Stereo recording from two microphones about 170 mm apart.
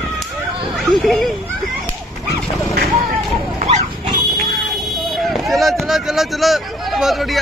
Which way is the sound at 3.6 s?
45° right (ahead or behind).